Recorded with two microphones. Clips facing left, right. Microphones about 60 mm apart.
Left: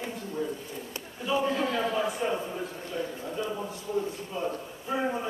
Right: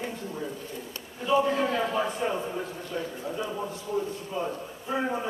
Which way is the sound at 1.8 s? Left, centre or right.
Centre.